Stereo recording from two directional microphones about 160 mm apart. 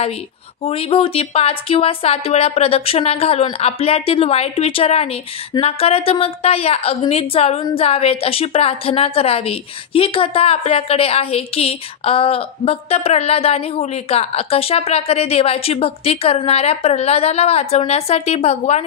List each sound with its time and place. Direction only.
0.6 s a woman's voice: 40° left (ahead or behind)